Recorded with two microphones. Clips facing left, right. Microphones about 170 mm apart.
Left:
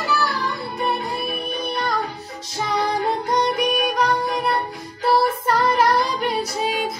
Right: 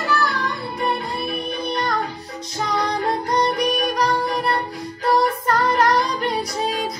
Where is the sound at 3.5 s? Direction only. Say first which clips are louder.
Even; centre (ahead or behind).